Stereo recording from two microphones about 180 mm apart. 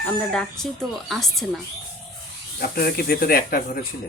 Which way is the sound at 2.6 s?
55° left (ahead or behind).